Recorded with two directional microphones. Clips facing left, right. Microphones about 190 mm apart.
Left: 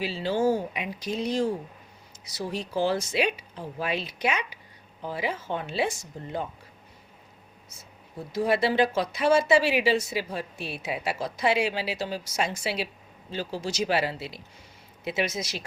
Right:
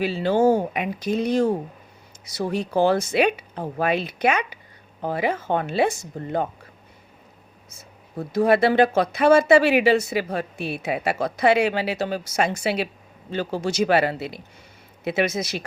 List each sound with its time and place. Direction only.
0.0 s speech: 55° right (ahead or behind)
8.1 s speech: 55° right (ahead or behind)